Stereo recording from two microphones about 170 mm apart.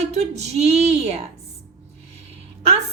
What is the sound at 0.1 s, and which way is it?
A woman's voice, 40° right (ahead or behind).